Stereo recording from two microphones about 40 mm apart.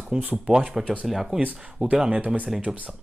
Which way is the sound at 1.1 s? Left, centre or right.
Centre.